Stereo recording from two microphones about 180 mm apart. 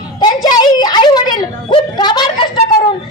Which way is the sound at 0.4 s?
20° left (ahead or behind).